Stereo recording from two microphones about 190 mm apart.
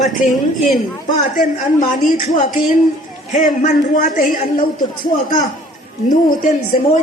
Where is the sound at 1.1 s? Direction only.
45° left (ahead or behind).